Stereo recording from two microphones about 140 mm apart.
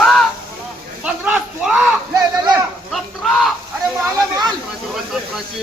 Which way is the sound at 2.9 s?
Centre (ahead or behind).